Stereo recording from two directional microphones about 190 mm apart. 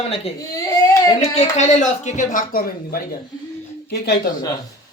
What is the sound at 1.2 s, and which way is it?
Speech, 35° left (ahead or behind).